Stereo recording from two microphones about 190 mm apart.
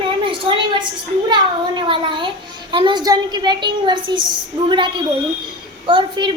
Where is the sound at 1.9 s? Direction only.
25° right (ahead or behind).